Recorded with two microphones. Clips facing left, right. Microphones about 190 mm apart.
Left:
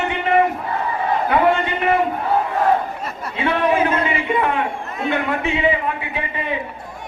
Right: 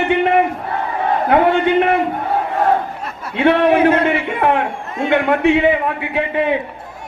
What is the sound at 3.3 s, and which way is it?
A man's voice, 65° right (ahead or behind).